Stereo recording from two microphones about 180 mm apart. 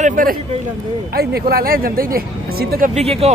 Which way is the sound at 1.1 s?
60° right (ahead or behind).